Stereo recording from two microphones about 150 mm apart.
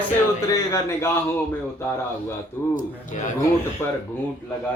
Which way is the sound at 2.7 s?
55° left (ahead or behind).